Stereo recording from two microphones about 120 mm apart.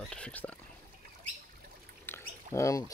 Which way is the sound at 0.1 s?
10° left (ahead or behind).